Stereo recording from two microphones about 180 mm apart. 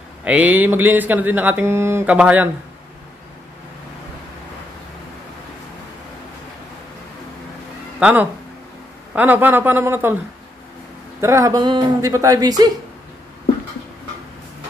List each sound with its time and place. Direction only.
0.2 s speech: 5° right (ahead or behind)
8.0 s speech: 10° right (ahead or behind)
11.1 s speech: 15° right (ahead or behind)